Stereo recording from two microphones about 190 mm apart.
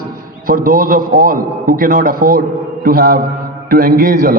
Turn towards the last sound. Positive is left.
turn(degrees=-50)  # may be behind; listen again after turning